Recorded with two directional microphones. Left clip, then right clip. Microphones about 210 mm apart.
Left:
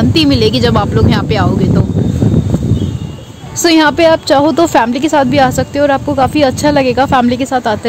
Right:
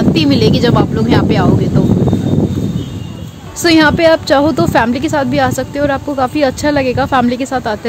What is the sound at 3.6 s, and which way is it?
A woman's voice, 20° left (ahead or behind).